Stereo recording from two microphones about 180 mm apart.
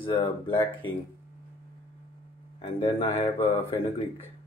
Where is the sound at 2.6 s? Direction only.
30° left (ahead or behind).